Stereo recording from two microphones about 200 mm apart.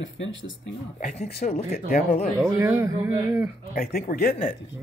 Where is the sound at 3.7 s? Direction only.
50° left (ahead or behind).